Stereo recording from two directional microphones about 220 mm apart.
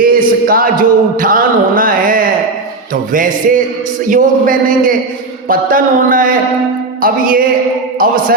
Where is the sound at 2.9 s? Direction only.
40° right (ahead or behind).